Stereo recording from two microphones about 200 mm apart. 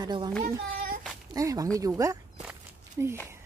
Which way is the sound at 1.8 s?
15° right (ahead or behind).